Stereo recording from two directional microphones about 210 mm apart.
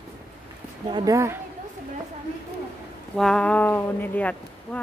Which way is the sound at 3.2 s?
5° left (ahead or behind).